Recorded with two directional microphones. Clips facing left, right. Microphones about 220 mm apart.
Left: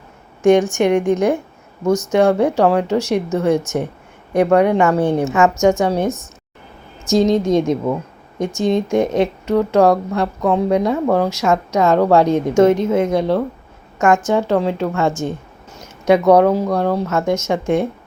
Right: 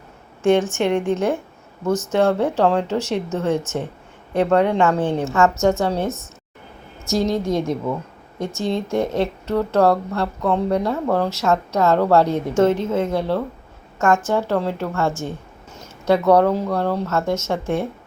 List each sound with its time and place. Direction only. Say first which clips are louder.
0.7 s a woman's voice: left 4 dB; 15° left (ahead or behind)